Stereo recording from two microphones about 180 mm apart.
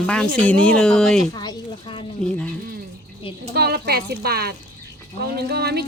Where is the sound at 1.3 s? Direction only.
25° left (ahead or behind).